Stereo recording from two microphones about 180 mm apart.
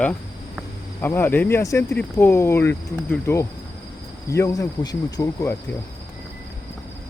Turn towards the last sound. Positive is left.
turn(degrees=15)  # may be behind; listen again after turning